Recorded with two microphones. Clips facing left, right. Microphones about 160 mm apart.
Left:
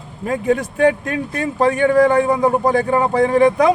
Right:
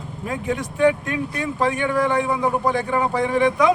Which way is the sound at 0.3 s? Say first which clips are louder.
Left 7 dB; 45° left (ahead or behind).